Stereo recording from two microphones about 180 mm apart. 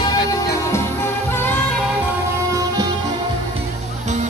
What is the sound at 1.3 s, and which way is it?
Music, 10° left (ahead or behind).